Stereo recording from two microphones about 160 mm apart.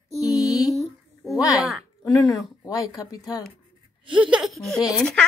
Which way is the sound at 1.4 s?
20° left (ahead or behind).